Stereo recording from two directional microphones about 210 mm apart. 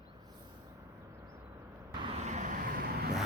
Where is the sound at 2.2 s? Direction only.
35° right (ahead or behind).